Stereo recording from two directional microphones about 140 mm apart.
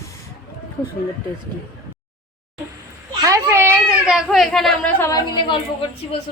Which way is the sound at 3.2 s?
25° right (ahead or behind).